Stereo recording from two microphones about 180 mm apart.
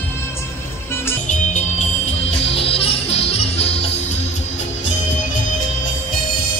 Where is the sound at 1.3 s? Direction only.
40° left (ahead or behind).